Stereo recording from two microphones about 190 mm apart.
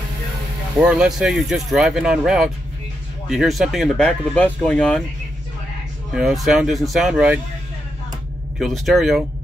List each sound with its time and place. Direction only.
0.7 s speech: 5° right (ahead or behind)
6.1 s speech: centre (ahead or behind)
8.5 s speech: centre (ahead or behind)